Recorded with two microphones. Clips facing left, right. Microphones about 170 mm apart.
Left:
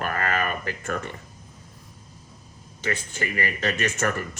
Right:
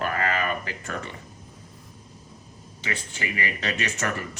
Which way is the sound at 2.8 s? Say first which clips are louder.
Left 3 dB; 45° left (ahead or behind).